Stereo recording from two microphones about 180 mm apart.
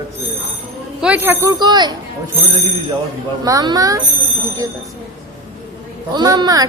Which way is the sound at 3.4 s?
20° right (ahead or behind).